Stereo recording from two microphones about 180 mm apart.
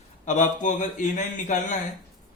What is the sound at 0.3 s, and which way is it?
A man's voice, 45° left (ahead or behind).